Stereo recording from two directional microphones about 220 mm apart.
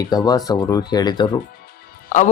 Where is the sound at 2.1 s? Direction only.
35° left (ahead or behind).